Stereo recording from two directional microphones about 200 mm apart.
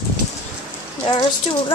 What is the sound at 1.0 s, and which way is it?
Speech, 25° left (ahead or behind).